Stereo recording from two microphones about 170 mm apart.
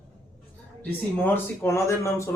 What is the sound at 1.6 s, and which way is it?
Speech, 15° left (ahead or behind).